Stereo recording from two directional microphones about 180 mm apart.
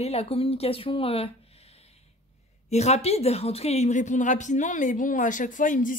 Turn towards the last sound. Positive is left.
turn(degrees=45)  # may be behind; listen again after turning